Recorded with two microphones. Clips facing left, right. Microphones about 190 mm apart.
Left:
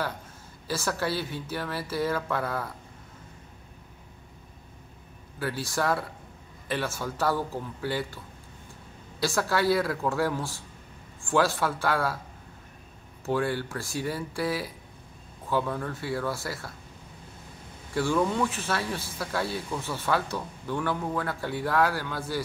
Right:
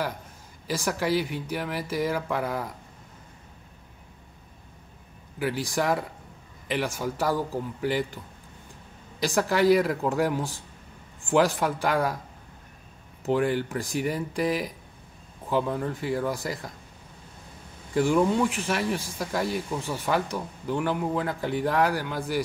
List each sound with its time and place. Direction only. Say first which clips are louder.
0.7 s speech: right 3 dB; 15° right (ahead or behind)
5.4 s speech: right 2 dB; 15° right (ahead or behind)
9.2 s speech: right 3 dB; 15° right (ahead or behind)
13.2 s speech: right 3 dB; 15° right (ahead or behind)
17.9 s speech: right 4 dB; 15° right (ahead or behind)